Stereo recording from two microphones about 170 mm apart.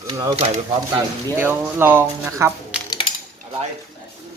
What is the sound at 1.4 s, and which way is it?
Speech, 10° right (ahead or behind).